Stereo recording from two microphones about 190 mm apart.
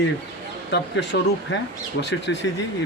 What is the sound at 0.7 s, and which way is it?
Speech, 65° left (ahead or behind).